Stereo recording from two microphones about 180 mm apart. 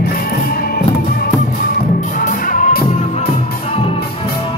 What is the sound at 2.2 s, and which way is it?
Music, 45° left (ahead or behind).